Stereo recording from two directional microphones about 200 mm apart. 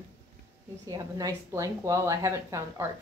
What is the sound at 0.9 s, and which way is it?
A woman's voice, 20° right (ahead or behind).